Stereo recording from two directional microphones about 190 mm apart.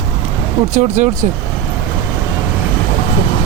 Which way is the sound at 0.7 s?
40° right (ahead or behind).